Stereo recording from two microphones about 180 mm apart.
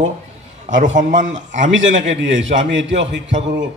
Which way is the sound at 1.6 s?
90° right.